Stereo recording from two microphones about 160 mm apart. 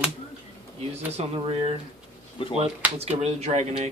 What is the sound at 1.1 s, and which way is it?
Speech, 35° right (ahead or behind).